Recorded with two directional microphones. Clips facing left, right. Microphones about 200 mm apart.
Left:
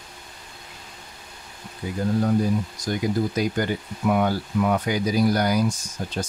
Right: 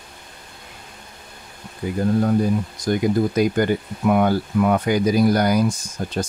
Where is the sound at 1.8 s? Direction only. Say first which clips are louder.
Right 4 dB; 50° right (ahead or behind).